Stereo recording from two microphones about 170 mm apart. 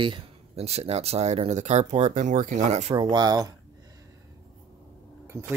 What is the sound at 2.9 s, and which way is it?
Speech, 25° right (ahead or behind).